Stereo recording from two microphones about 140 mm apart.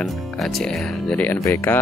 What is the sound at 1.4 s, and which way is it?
Speech, 20° left (ahead or behind).